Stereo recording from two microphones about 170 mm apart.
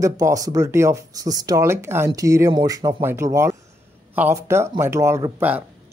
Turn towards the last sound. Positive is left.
turn(degrees=-10)  # may be behind; listen again after turning